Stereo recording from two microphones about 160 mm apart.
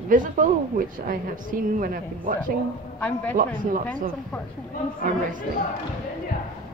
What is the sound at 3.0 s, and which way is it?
Speech, 10° left (ahead or behind).